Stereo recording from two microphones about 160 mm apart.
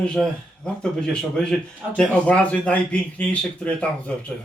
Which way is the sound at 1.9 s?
5° left (ahead or behind).